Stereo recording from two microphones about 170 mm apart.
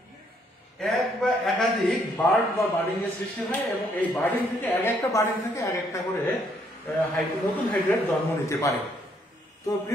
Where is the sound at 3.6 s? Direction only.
5° left (ahead or behind).